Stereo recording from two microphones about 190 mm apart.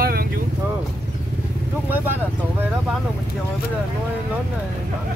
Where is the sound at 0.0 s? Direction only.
50° right (ahead or behind).